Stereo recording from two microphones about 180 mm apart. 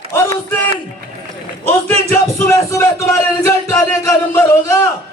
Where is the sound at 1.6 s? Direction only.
15° left (ahead or behind).